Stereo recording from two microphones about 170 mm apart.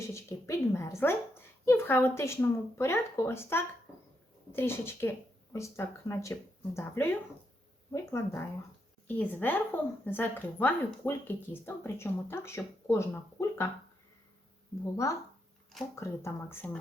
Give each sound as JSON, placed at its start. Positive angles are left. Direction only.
{"t": 0.1, "sound": "a woman's voice", "side_deg": 15}
{"t": 14.9, "sound": "speech", "side_deg": 20}